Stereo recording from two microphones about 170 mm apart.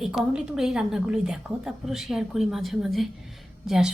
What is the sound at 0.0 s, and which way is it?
A woman's voice, 5° right (ahead or behind).